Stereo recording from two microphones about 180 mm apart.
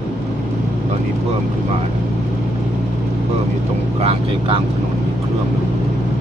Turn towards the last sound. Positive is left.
turn(degrees=-35)  # may be behind; listen again after turning